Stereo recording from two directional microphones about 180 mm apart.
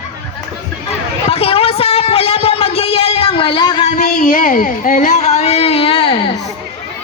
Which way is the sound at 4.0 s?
55° left (ahead or behind).